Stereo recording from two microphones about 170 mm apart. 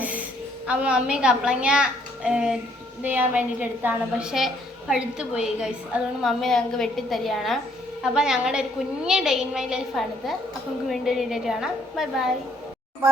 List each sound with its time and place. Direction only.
0.7 s a woman's voice: 5° right (ahead or behind)